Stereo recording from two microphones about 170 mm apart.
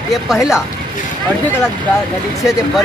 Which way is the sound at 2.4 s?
Centre (ahead or behind).